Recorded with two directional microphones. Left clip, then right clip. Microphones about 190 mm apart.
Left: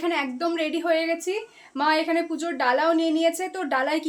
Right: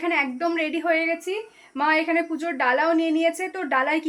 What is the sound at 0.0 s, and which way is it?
A woman's voice, 5° left (ahead or behind).